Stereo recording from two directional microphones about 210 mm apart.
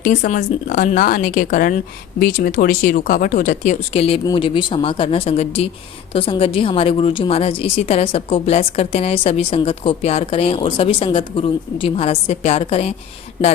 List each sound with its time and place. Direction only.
0.0 s a woman's voice: 35° left (ahead or behind)